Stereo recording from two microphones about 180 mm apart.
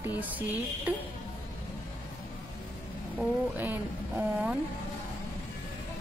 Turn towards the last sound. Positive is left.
turn(degrees=-10)  # may be behind; listen again after turning